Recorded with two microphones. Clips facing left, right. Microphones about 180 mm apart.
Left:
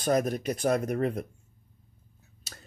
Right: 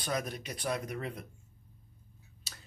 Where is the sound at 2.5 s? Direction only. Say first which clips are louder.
Left 5 dB; 45° left (ahead or behind).